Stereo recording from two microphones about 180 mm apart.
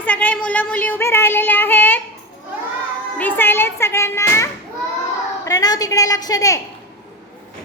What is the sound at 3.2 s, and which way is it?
A woman's voice, 10° left (ahead or behind).